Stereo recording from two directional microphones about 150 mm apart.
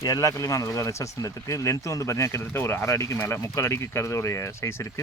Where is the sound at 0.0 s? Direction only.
25° left (ahead or behind).